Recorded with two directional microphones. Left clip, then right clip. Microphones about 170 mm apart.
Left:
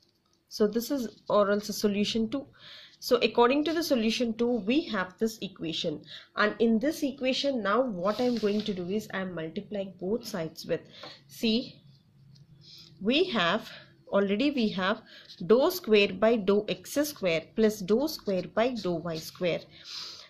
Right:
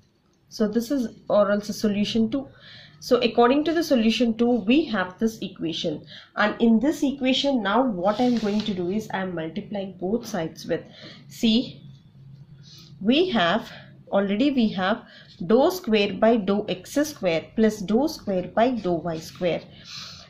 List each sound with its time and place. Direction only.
0.5 s speech: 45° left (ahead or behind)
13.0 s speech: 50° left (ahead or behind)